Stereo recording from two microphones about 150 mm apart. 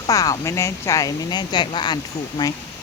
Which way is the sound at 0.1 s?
20° left (ahead or behind).